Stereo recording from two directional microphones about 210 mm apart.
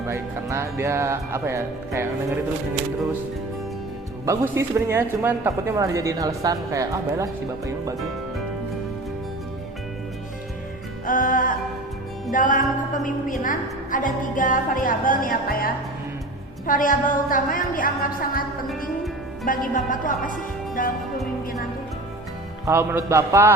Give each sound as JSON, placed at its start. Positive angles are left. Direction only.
{"t": 0.1, "sound": "speech", "side_deg": -15}
{"t": 4.3, "sound": "speech", "side_deg": -10}
{"t": 11.0, "sound": "music", "side_deg": 40}
{"t": 12.3, "sound": "a woman's voice", "side_deg": 40}
{"t": 19.5, "sound": "a woman's voice", "side_deg": 40}
{"t": 22.6, "sound": "speech", "side_deg": -10}